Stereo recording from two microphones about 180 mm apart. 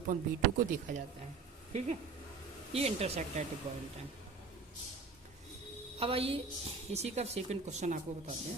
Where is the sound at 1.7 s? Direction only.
40° right (ahead or behind).